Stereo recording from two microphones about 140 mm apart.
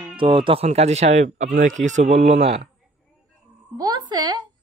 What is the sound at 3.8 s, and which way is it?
Speech, 30° right (ahead or behind).